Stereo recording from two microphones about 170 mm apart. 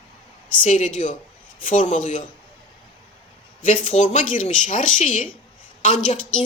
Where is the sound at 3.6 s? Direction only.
50° left (ahead or behind).